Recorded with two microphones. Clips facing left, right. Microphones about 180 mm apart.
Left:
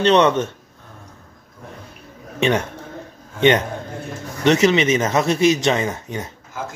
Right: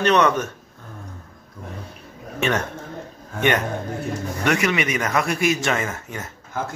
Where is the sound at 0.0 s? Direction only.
25° left (ahead or behind).